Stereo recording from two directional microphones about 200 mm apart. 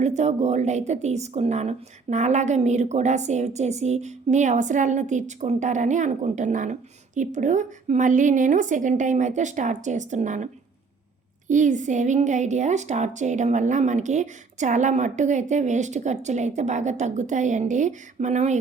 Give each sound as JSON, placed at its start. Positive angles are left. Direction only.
{"t": 0.0, "sound": "speech", "side_deg": -35}